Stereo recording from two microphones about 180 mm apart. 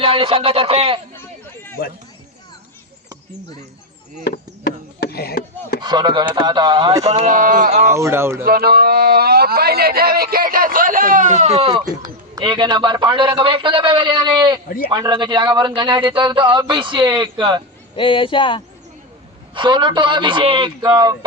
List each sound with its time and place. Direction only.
0.0 s speech: 30° right (ahead or behind)
1.8 s speech: 55° left (ahead or behind)
4.2 s chop: 60° left (ahead or behind)
5.8 s speech: 25° right (ahead or behind)
7.0 s speech: 40° right (ahead or behind)
7.9 s a man's voice: 15° right (ahead or behind)
8.4 s speech: 55° right (ahead or behind); by 17.6 s 25° right (ahead or behind)
17.9 s speech: 30° left (ahead or behind)
19.5 s speech: 25° right (ahead or behind)